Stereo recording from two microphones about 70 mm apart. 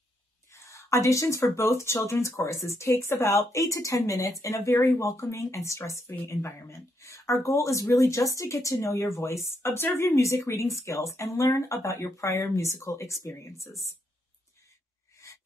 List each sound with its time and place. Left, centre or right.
0.5 s speech: left
15.2 s filing: left